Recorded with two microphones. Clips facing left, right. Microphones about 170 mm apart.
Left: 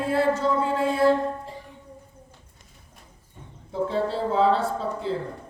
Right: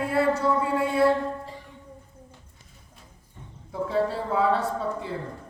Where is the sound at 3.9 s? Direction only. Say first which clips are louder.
Right 1 dB; 30° left (ahead or behind).